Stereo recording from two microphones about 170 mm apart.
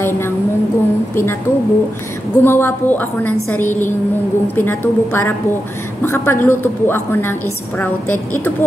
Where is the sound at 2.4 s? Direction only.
15° left (ahead or behind).